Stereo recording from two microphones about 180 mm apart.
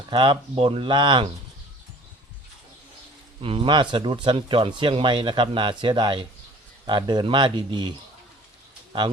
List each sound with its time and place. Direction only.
0.1 s speech: 25° right (ahead or behind)
3.4 s speech: 30° right (ahead or behind)